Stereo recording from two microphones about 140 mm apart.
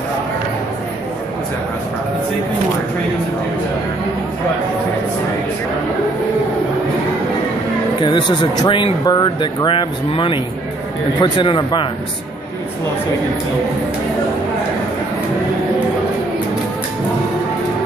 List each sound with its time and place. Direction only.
8.0 s speech: 35° left (ahead or behind)